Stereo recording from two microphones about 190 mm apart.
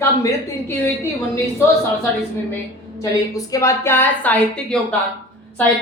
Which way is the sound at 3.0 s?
20° left (ahead or behind).